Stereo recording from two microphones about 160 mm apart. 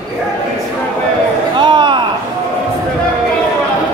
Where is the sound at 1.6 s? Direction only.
30° right (ahead or behind).